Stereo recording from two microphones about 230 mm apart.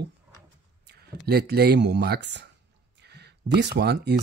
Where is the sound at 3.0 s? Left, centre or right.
Right.